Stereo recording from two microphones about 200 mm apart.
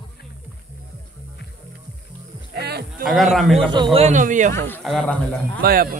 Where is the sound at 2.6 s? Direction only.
55° right (ahead or behind).